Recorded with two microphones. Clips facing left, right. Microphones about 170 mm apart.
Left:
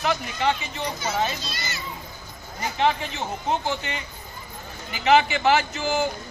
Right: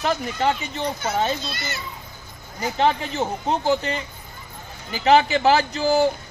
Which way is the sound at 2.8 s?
35° right (ahead or behind).